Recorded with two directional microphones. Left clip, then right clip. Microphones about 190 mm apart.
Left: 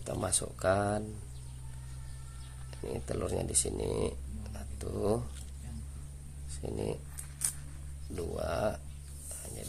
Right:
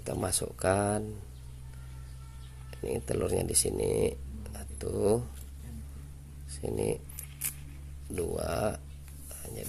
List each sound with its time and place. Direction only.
0.0 s speech: 15° right (ahead or behind)
2.8 s speech: 15° right (ahead or behind)
6.5 s speech: 15° right (ahead or behind)
8.1 s speech: 15° right (ahead or behind)